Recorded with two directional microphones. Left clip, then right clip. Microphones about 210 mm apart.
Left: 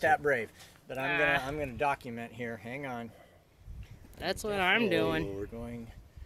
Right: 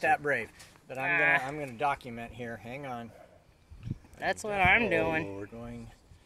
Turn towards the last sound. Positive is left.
turn(degrees=25)  # may be behind; listen again after turning